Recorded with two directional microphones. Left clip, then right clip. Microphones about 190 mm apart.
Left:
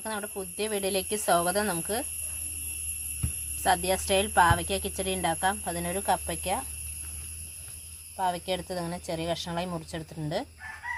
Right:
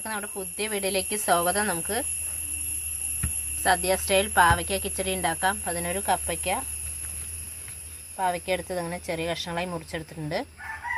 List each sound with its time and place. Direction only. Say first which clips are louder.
0.0 s a woman's voice: right 1 dB; 15° right (ahead or behind)
3.6 s a woman's voice: right 2 dB; 15° right (ahead or behind)
8.1 s a woman's voice: right 3 dB; 15° right (ahead or behind)